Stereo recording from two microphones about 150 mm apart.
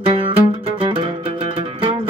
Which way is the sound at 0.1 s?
35° right (ahead or behind).